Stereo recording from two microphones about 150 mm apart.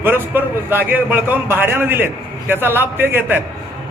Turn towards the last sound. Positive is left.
turn(degrees=-15)  # may be behind; listen again after turning